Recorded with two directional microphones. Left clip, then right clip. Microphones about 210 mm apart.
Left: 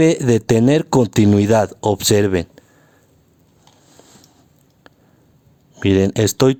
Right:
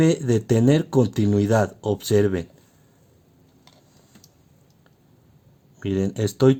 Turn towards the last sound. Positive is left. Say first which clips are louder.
# left 5 dB
turn(degrees=50)  # may be behind; listen again after turning